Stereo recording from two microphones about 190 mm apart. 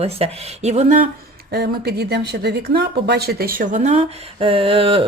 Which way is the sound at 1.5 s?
55° right (ahead or behind).